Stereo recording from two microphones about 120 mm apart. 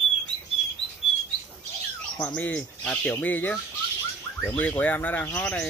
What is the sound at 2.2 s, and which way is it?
Speech, 15° left (ahead or behind).